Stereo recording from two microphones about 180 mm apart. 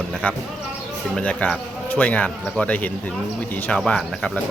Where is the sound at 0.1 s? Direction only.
5° left (ahead or behind).